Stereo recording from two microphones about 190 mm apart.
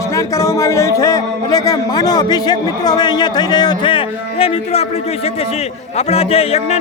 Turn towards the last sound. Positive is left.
turn(degrees=30)  # may be behind; listen again after turning